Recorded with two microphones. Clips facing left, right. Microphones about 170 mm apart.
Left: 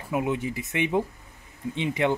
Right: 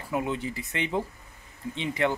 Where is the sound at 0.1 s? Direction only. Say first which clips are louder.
Left 3 dB; 15° left (ahead or behind).